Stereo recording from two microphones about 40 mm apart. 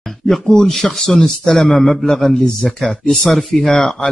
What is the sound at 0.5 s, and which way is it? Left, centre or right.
Speech, centre.